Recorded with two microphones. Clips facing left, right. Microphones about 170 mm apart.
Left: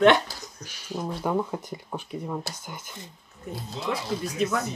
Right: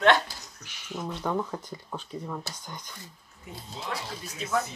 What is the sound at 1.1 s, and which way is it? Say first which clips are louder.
Speech: left 3 dB; 10° left (ahead or behind).